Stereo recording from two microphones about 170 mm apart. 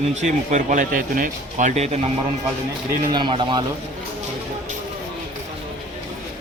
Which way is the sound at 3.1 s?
30° right (ahead or behind).